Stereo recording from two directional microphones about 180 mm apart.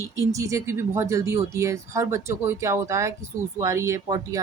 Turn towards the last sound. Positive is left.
turn(degrees=-15)  # may be behind; listen again after turning